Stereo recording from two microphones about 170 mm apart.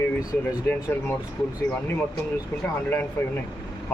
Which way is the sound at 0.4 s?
15° left (ahead or behind).